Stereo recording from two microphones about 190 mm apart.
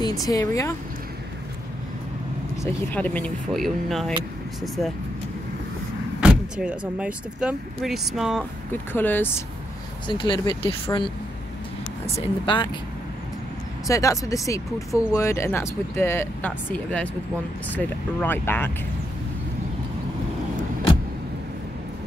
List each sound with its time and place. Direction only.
0.0 s speech: 20° left (ahead or behind)
2.5 s speech: 15° left (ahead or behind)
6.2 s vehicle: 5° right (ahead or behind)
7.0 s speech: 5° right (ahead or behind)
8.9 s speech: 10° left (ahead or behind)
10.0 s speech: 25° left (ahead or behind)
12.2 s speech: 25° left (ahead or behind)
13.8 s speech: 15° left (ahead or behind)